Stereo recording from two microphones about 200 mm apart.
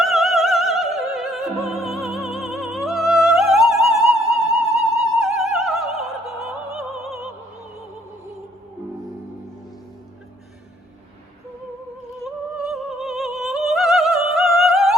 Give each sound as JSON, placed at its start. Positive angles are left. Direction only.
{"t": 0.0, "sound": "opera", "side_deg": 0}
{"t": 1.9, "sound": "music", "side_deg": 0}
{"t": 2.1, "sound": "music", "side_deg": 30}
{"t": 2.4, "sound": "music", "side_deg": 0}
{"t": 4.8, "sound": "opera", "side_deg": 0}
{"t": 12.2, "sound": "music", "side_deg": 0}